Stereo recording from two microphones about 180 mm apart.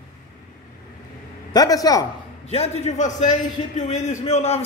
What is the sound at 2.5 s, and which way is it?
A man's voice, 35° left (ahead or behind).